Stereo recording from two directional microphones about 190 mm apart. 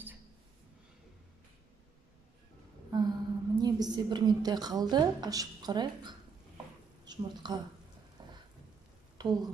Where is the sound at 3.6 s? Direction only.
20° right (ahead or behind).